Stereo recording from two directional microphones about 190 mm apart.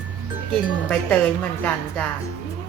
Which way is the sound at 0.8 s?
5° left (ahead or behind).